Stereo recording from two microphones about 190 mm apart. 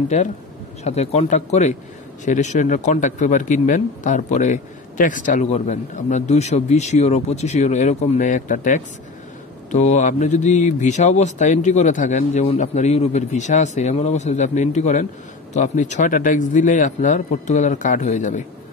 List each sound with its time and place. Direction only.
0.1 s a man's voice: 40° left (ahead or behind)